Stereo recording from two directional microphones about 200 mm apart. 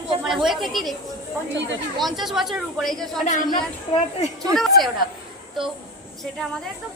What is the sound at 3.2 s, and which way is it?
Speech, 40° left (ahead or behind).